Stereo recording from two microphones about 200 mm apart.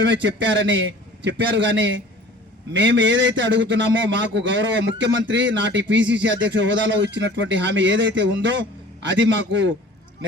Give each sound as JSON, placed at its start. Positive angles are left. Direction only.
{"t": 0.0, "sound": "a man's voice", "side_deg": -65}